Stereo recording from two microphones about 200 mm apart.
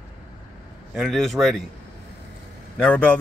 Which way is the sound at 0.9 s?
Centre (ahead or behind).